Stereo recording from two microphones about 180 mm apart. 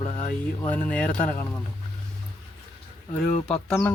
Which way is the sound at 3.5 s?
5° left (ahead or behind).